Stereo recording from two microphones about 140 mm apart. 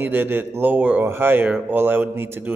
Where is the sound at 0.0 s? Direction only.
15° right (ahead or behind).